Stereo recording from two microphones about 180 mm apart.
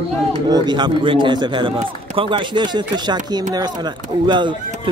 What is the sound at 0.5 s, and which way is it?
A man's voice, 25° right (ahead or behind).